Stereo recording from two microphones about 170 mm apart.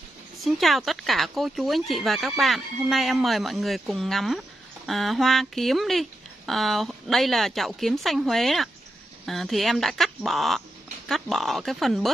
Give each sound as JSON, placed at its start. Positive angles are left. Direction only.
{"t": 0.4, "sound": "speech", "side_deg": 0}